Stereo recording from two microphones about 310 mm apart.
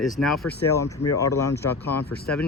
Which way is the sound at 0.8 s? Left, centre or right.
Left.